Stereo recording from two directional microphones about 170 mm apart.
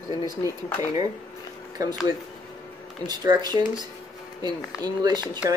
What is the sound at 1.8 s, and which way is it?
Speech, 20° right (ahead or behind).